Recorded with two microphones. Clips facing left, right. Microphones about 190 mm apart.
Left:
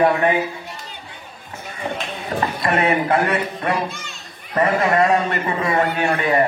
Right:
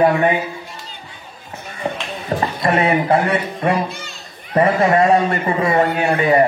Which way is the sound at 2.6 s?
30° right (ahead or behind).